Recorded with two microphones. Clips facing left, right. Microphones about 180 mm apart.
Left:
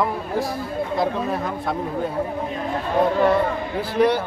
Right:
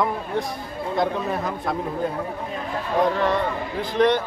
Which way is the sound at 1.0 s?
Centre (ahead or behind).